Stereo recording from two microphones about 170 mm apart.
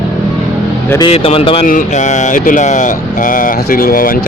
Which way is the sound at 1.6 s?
50° left (ahead or behind).